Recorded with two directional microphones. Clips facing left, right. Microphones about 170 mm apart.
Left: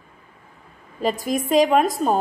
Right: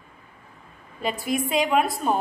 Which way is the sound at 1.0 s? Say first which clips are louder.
Left 3 dB; 40° left (ahead or behind).